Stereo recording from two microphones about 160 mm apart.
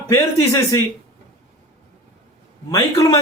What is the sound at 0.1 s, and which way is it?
Speech, 20° left (ahead or behind).